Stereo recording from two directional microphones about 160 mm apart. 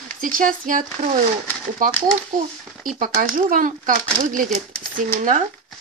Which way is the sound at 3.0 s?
60° right (ahead or behind).